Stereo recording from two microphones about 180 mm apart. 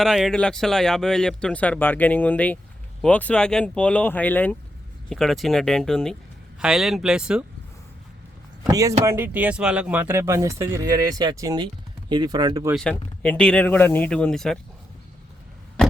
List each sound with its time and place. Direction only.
0.0 s speech: centre (ahead or behind)
8.6 s speech: 20° right (ahead or behind)
12.7 s speech: 5° left (ahead or behind)